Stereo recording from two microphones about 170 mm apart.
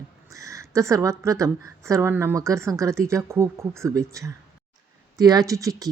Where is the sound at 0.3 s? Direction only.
20° right (ahead or behind).